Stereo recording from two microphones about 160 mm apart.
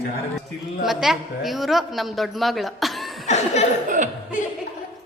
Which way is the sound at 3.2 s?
45° left (ahead or behind).